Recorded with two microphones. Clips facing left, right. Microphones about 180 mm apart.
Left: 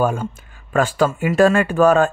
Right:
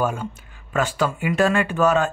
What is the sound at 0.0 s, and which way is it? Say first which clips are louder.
Speech: left 4 dB; 50° left (ahead or behind).